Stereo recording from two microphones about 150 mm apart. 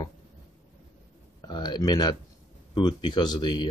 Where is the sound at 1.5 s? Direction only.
30° left (ahead or behind).